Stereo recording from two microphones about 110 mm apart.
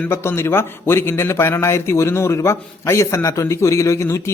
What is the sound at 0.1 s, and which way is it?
Speech, 25° left (ahead or behind).